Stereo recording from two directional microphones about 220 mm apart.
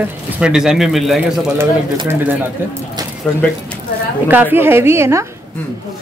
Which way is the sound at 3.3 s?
5° left (ahead or behind).